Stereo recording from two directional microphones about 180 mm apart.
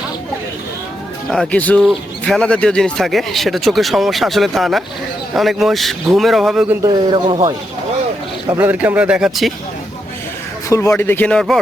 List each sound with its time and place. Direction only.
1.3 s speech: 5° left (ahead or behind)
6.8 s speech: 25° right (ahead or behind)
8.5 s speech: 10° right (ahead or behind)
10.7 s a man's voice: 15° left (ahead or behind)